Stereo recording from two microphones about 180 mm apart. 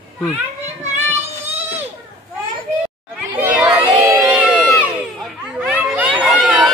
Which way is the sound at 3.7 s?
20° right (ahead or behind).